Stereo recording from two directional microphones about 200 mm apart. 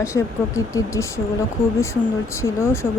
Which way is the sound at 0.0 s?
15° left (ahead or behind).